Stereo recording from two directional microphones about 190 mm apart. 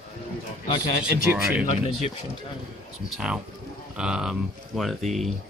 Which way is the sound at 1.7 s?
40° left (ahead or behind).